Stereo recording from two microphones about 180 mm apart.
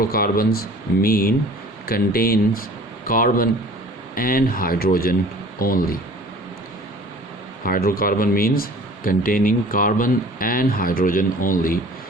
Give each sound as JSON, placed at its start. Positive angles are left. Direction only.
{"t": 0.0, "sound": "speech", "side_deg": 55}
{"t": 7.6, "sound": "speech", "side_deg": 55}